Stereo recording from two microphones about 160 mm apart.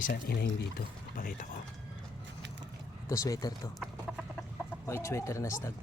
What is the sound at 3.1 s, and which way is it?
Speech, 20° left (ahead or behind).